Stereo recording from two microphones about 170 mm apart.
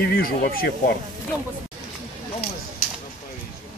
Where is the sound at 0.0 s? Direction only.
60° left (ahead or behind).